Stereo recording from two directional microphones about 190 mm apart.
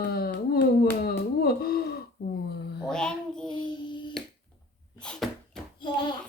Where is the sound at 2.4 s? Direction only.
60° left (ahead or behind).